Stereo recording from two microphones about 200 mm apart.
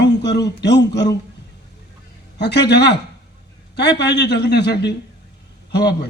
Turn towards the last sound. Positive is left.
turn(degrees=55)  # may be behind; listen again after turning